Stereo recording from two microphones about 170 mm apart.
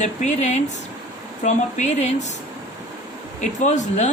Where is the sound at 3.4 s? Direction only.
45° left (ahead or behind).